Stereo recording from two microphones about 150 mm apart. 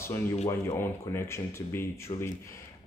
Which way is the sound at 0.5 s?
15° left (ahead or behind).